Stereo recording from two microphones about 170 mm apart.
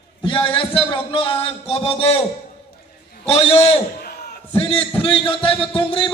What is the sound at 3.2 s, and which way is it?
A man's voice, 35° left (ahead or behind).